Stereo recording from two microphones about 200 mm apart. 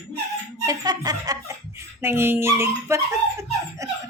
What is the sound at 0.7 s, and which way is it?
Speech, 20° right (ahead or behind).